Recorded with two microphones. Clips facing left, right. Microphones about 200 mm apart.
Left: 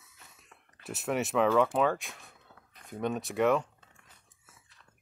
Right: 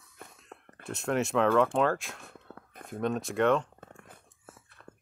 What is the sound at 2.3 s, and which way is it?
Whispering, 55° right (ahead or behind).